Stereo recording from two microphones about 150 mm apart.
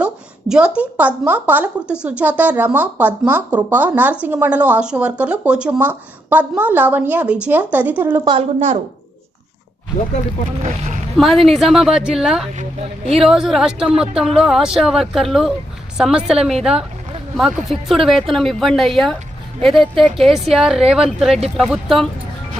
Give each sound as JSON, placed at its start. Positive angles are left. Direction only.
{"t": 0.0, "sound": "a sound", "side_deg": -5}
{"t": 0.8, "sound": "speech", "side_deg": -10}
{"t": 8.2, "sound": "a woman's voice", "side_deg": -35}
{"t": 10.6, "sound": "speech", "side_deg": -50}
{"t": 11.2, "sound": "speech", "side_deg": 0}